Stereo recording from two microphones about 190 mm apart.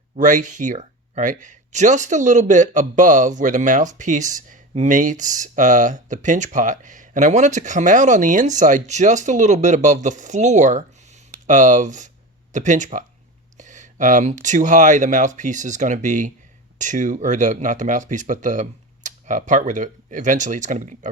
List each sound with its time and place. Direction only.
0.2 s speech: 40° right (ahead or behind)